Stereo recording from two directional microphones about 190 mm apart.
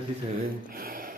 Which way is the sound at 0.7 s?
50° right (ahead or behind).